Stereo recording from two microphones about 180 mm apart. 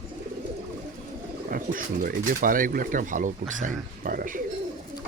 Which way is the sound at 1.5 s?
50° right (ahead or behind).